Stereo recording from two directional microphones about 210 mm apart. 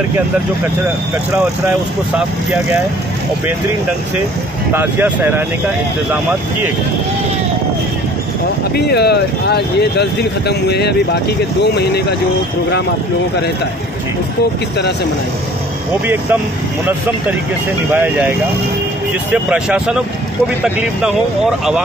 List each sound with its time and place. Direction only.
2.1 s speech: 5° right (ahead or behind)
4.7 s speech: 10° right (ahead or behind)
8.7 s speech: 50° left (ahead or behind)
17.9 s speech: 10° right (ahead or behind)
19.3 s speech: 5° right (ahead or behind)